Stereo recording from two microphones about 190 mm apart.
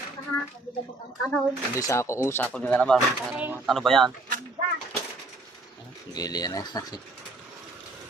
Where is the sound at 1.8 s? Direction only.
15° left (ahead or behind).